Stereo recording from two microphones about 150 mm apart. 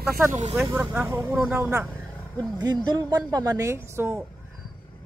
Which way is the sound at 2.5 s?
25° right (ahead or behind).